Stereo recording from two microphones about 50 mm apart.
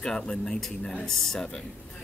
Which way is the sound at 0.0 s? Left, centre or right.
Centre.